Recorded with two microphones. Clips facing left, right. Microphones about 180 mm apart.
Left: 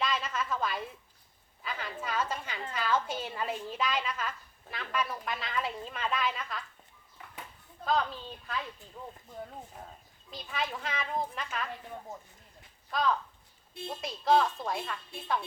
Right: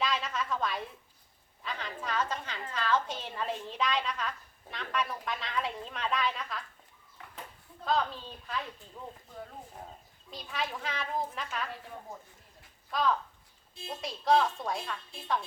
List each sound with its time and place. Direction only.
0.0 s a sound: centre (ahead or behind)
1.6 s a woman's voice: 5° left (ahead or behind)
7.9 s a woman's voice: centre (ahead or behind)
10.3 s a woman's voice: centre (ahead or behind)
12.9 s a woman's voice: centre (ahead or behind)